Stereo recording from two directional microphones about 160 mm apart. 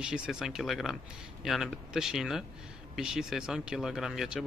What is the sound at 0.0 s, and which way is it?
Speech, 5° right (ahead or behind).